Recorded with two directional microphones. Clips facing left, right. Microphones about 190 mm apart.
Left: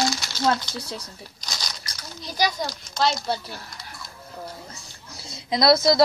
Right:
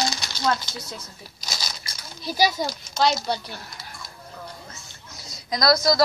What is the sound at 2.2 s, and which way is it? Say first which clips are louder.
Speech: right 3 dB; 5° right (ahead or behind).